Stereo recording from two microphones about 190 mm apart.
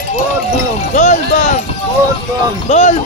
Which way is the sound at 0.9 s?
40° left (ahead or behind).